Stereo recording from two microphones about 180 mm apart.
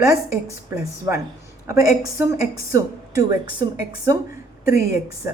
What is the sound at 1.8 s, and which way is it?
A woman's voice, 20° right (ahead or behind).